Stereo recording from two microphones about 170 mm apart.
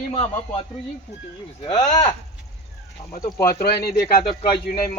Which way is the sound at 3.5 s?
65° left (ahead or behind).